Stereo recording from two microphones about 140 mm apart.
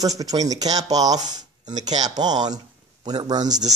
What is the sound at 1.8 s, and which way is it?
Speech, 30° right (ahead or behind).